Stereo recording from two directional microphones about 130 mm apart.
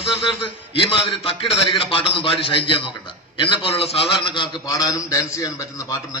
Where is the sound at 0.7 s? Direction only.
40° left (ahead or behind).